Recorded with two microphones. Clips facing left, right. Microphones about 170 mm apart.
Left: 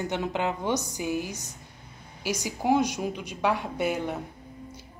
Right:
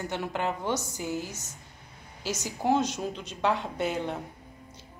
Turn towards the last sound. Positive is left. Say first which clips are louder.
# left 2 dB
turn(degrees=10)  # may be behind; listen again after turning